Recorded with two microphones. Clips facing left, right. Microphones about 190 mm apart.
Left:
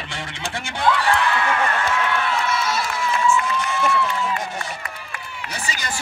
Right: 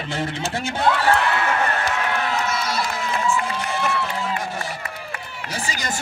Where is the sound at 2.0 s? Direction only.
40° right (ahead or behind).